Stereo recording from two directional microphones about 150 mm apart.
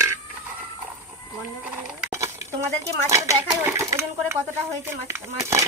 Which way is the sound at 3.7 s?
20° right (ahead or behind).